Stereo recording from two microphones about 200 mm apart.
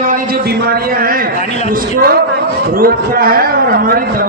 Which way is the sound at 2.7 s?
45° right (ahead or behind).